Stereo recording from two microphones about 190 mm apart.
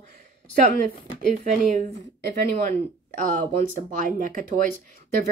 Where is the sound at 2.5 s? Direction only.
40° right (ahead or behind).